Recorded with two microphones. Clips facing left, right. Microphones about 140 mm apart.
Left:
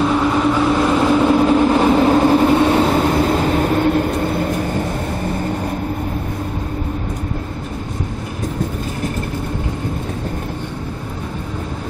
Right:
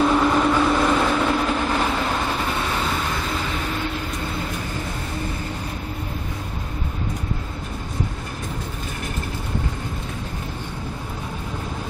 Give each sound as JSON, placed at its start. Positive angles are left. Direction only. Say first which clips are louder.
{"t": 0.0, "sound": "vehicle", "louder": "left 2 dB", "side_deg": 5}